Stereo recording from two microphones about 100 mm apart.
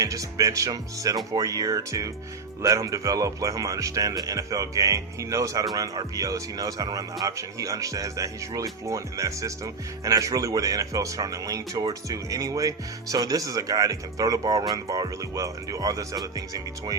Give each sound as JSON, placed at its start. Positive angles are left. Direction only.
{"t": 0.0, "sound": "speech", "side_deg": -35}